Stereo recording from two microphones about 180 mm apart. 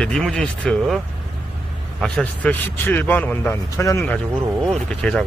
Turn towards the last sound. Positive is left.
turn(degrees=5)  # may be behind; listen again after turning